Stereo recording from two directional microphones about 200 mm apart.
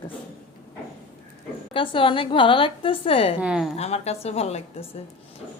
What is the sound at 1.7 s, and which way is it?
A woman's voice, 25° left (ahead or behind).